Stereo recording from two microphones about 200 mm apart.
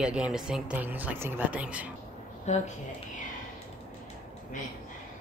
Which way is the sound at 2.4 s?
35° left (ahead or behind).